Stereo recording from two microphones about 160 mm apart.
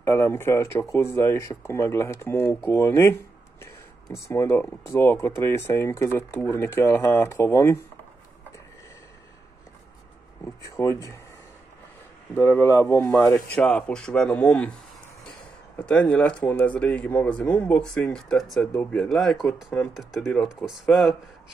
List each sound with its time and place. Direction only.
0.0 s speech: 15° left (ahead or behind)
4.3 s speech: 15° left (ahead or behind)
10.4 s speech: 20° left (ahead or behind)
12.4 s speech: 15° left (ahead or behind); by 21.2 s centre (ahead or behind)